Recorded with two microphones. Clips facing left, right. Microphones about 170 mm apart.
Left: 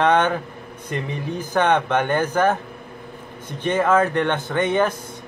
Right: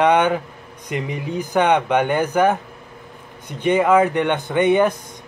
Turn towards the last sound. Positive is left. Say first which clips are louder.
# right 4 dB
turn(degrees=-15)  # may be behind; listen again after turning